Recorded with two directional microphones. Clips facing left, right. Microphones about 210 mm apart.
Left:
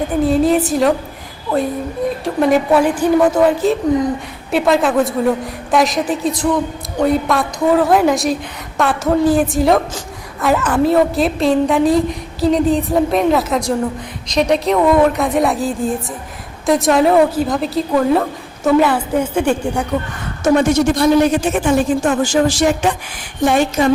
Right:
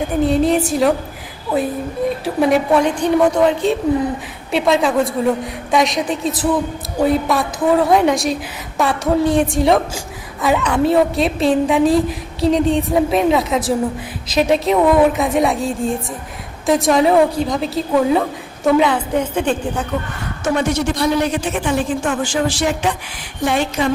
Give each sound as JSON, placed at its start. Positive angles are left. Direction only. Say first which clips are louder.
{"t": 0.2, "sound": "a woman's voice", "louder": "left 2 dB", "side_deg": 0}
{"t": 2.2, "sound": "a woman's voice", "louder": "left 2 dB", "side_deg": 0}
{"t": 20.4, "sound": "a woman's voice", "louder": "left 5 dB", "side_deg": 45}